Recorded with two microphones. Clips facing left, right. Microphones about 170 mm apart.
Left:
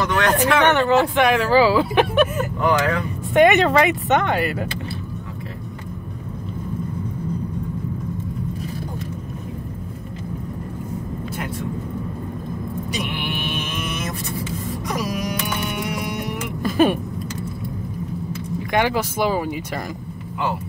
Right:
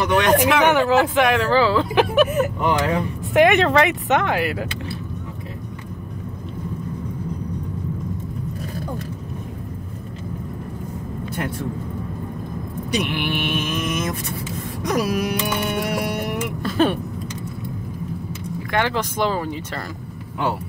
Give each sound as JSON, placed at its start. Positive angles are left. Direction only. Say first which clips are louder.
{"t": 0.0, "sound": "speech", "louder": "right 2 dB", "side_deg": -15}
{"t": 2.6, "sound": "speech", "louder": "left 1 dB", "side_deg": -25}
{"t": 3.3, "sound": "speech", "louder": "left 1 dB", "side_deg": 0}
{"t": 13.6, "sound": "mantra", "louder": "right 4 dB", "side_deg": -45}
{"t": 16.6, "sound": "vehicle", "louder": "left 3 dB", "side_deg": 10}
{"t": 18.7, "sound": "speech", "louder": "left 2 dB", "side_deg": 10}